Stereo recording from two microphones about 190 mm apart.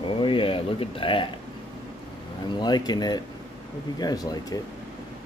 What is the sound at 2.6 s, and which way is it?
Speech, 20° left (ahead or behind).